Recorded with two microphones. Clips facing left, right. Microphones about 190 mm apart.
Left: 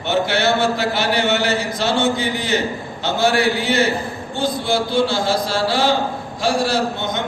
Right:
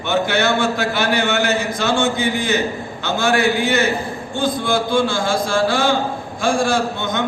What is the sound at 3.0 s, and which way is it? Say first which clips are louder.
A man's voice: even; 50° right (ahead or behind).